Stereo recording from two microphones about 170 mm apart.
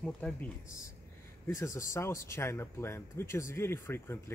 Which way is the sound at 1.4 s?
15° left (ahead or behind).